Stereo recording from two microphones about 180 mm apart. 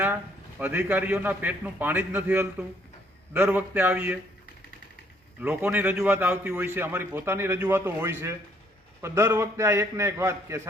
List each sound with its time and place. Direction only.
0.6 s a man's voice: 10° right (ahead or behind)
5.4 s a man's voice: 10° right (ahead or behind)